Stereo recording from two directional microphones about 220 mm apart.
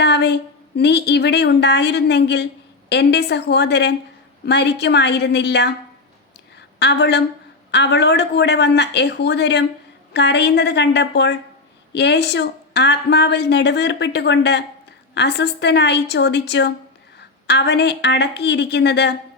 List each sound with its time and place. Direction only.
0.0 s a sound: 50° left (ahead or behind)
0.8 s a woman's voice: 50° left (ahead or behind)
6.7 s a woman's voice: 50° left (ahead or behind)